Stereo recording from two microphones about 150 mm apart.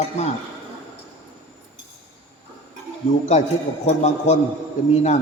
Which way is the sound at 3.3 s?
50° left (ahead or behind).